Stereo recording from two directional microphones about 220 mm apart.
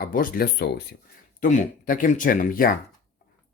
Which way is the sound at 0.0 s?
40° left (ahead or behind).